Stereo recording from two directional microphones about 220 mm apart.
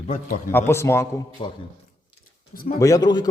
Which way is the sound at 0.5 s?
10° left (ahead or behind).